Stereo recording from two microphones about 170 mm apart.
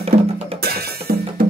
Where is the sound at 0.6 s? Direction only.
65° right (ahead or behind).